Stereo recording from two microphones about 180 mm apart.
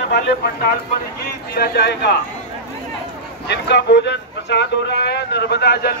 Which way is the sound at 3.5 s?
70° left (ahead or behind).